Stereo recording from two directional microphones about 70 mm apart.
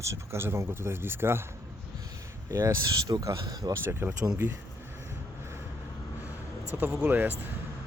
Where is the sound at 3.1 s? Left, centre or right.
Right.